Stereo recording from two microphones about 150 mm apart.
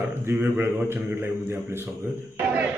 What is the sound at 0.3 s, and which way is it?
Speech, 15° right (ahead or behind).